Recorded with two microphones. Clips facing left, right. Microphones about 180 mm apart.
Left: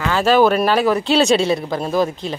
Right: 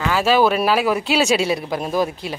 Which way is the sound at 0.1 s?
5° right (ahead or behind).